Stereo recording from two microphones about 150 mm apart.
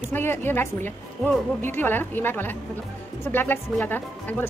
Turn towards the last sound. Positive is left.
turn(degrees=10)  # may be behind; listen again after turning